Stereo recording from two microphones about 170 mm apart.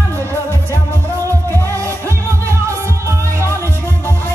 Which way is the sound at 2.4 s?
15° right (ahead or behind).